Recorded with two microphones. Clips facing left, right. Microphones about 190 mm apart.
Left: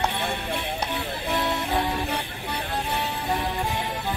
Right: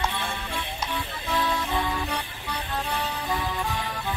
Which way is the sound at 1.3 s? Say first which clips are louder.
Left 1 dB; 25° left (ahead or behind).